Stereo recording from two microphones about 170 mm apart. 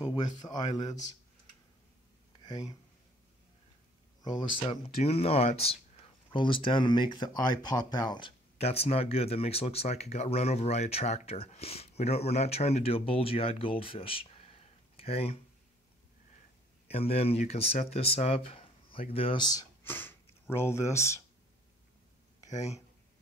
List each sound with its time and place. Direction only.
0.1 s speech: 25° left (ahead or behind)
4.2 s speech: 25° left (ahead or behind)
4.8 s speech: 35° left (ahead or behind)
8.5 s speech: 35° left (ahead or behind)
16.8 s speech: 35° left (ahead or behind)
19.8 s speech: 10° left (ahead or behind)
22.4 s speech: 20° left (ahead or behind)